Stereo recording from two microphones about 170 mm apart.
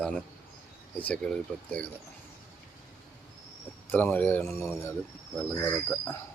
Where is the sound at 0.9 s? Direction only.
5° left (ahead or behind).